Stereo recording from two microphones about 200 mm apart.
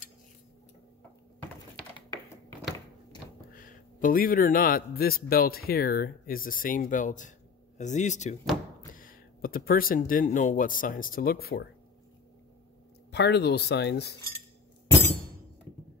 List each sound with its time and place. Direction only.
3.5 s a man's voice: 45° left (ahead or behind)
13.1 s speech: 55° left (ahead or behind)